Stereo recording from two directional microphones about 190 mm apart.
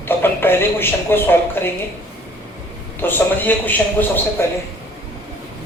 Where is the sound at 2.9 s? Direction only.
10° left (ahead or behind).